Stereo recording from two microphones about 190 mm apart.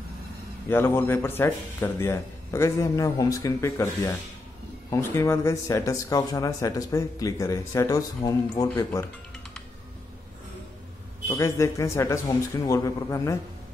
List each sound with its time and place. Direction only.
0.7 s speech: 10° left (ahead or behind)
11.2 s speech: 15° left (ahead or behind)